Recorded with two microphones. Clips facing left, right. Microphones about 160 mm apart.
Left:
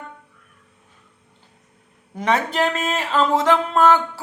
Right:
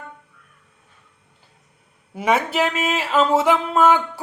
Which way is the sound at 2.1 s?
10° right (ahead or behind).